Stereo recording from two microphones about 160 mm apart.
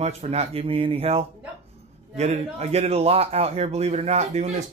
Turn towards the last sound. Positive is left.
turn(degrees=-45)  # may be behind; listen again after turning